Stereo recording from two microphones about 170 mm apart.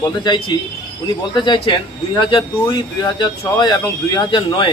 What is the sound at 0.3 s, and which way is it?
Speech, 25° left (ahead or behind).